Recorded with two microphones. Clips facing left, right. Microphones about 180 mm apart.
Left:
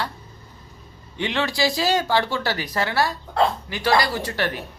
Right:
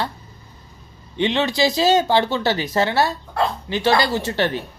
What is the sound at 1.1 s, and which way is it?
Speech, 20° right (ahead or behind).